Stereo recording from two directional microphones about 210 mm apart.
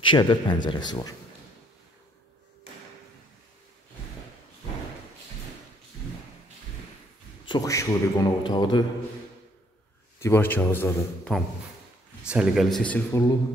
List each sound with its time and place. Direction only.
0.0 s a man's voice: 25° left (ahead or behind)
7.4 s a man's voice: 15° left (ahead or behind)
10.2 s a man's voice: 10° left (ahead or behind)